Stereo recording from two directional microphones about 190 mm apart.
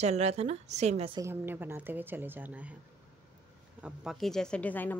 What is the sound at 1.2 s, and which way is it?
A woman's voice, 10° right (ahead or behind).